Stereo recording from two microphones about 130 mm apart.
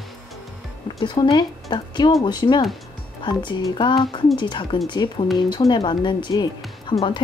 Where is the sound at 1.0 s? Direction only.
35° left (ahead or behind).